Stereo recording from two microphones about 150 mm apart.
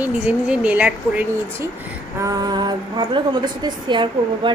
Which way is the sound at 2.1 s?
25° right (ahead or behind).